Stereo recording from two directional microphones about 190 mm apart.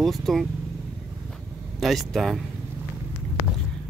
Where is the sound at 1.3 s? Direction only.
Centre (ahead or behind).